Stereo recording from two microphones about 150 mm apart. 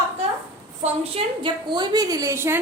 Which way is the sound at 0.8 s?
35° right (ahead or behind).